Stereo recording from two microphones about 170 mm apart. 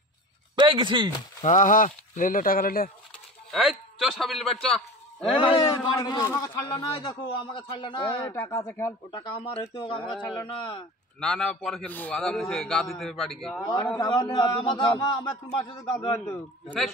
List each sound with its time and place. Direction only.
0.6 s speech: 30° right (ahead or behind)
1.4 s speech: 50° left (ahead or behind)
3.5 s a man's voice: centre (ahead or behind)
5.2 s a man's voice: 30° left (ahead or behind)
8.3 s a man's voice: 15° left (ahead or behind)
9.1 s a man's voice: 30° left (ahead or behind)
11.1 s a man's voice: 5° left (ahead or behind)
13.9 s a man's voice: 25° left (ahead or behind)
16.1 s a man's voice: 5° left (ahead or behind)